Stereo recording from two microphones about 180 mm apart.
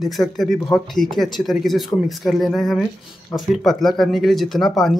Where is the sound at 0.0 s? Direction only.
Centre (ahead or behind).